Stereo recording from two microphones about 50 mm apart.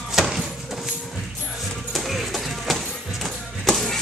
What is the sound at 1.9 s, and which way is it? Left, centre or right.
Music, centre.